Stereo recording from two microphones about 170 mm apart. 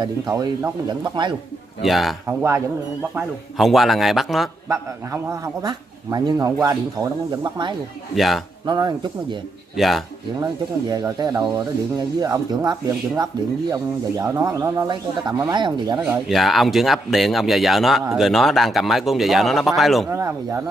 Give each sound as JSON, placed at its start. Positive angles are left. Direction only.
{"t": 0.8, "sound": "a man's voice", "side_deg": -25}
{"t": 1.8, "sound": "speech", "side_deg": 0}
{"t": 4.6, "sound": "a man's voice", "side_deg": -20}
{"t": 8.1, "sound": "speech", "side_deg": 0}
{"t": 8.6, "sound": "a man's voice", "side_deg": -25}
{"t": 9.8, "sound": "speech", "side_deg": 0}
{"t": 10.4, "sound": "a man's voice", "side_deg": -20}
{"t": 16.0, "sound": "speech", "side_deg": -5}
{"t": 20.1, "sound": "speech", "side_deg": -15}